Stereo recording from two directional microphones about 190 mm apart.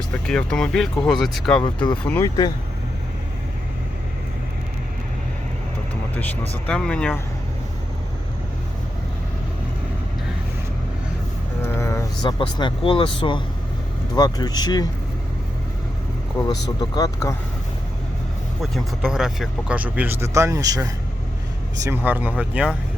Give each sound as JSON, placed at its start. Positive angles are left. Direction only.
{"t": 0.1, "sound": "speech", "side_deg": 5}
{"t": 1.6, "sound": "speech", "side_deg": 25}
{"t": 2.0, "sound": "speech", "side_deg": 10}
{"t": 6.7, "sound": "speech", "side_deg": 5}
{"t": 11.6, "sound": "vehicle", "side_deg": 15}
{"t": 12.2, "sound": "speech", "side_deg": 25}
{"t": 16.9, "sound": "speech", "side_deg": 15}
{"t": 18.6, "sound": "speech", "side_deg": 0}